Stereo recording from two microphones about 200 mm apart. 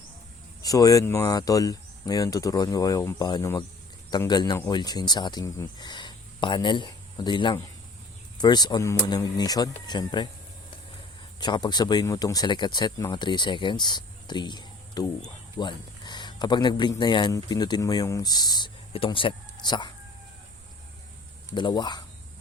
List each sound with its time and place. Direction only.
0.6 s speech: 15° left (ahead or behind)
11.3 s speech: 20° left (ahead or behind)
21.5 s speech: 20° left (ahead or behind)